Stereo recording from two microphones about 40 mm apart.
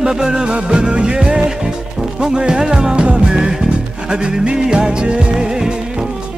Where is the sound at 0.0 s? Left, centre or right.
Centre.